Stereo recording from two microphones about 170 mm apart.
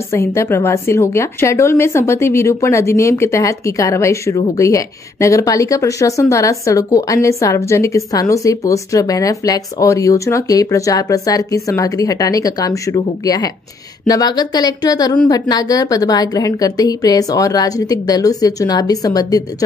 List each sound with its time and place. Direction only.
0.1 s a woman's voice: 15° left (ahead or behind)